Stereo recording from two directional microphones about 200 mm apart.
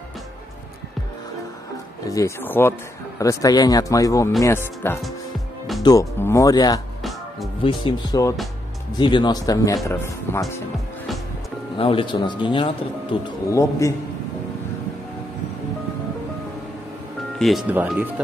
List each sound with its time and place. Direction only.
2.0 s speech: 15° left (ahead or behind)
7.0 s music: centre (ahead or behind)
7.6 s speech: 20° left (ahead or behind)
11.7 s speech: 25° left (ahead or behind)
13.5 s speech: 15° left (ahead or behind)
17.4 s speech: centre (ahead or behind)